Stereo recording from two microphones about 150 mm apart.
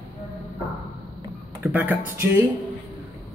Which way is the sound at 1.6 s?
10° right (ahead or behind).